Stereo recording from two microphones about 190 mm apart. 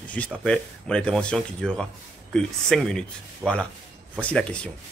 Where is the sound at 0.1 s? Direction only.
5° left (ahead or behind).